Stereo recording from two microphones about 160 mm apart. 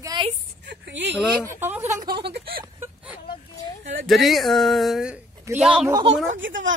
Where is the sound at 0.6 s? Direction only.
90° right.